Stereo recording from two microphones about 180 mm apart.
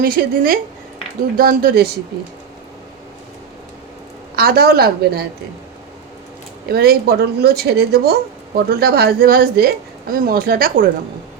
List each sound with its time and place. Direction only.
0.0 s speech: 55° right (ahead or behind)
4.4 s speech: 55° right (ahead or behind)
6.7 s speech: 60° right (ahead or behind)